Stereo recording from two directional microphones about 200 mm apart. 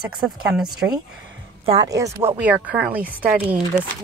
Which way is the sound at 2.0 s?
10° right (ahead or behind).